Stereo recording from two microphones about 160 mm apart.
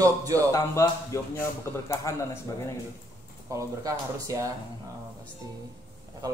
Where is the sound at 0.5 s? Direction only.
20° left (ahead or behind).